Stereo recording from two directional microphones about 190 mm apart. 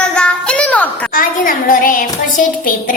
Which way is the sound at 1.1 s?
45° left (ahead or behind).